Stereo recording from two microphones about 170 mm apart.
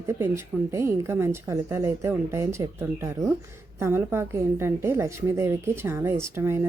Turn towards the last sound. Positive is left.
turn(degrees=-15)  # may be behind; listen again after turning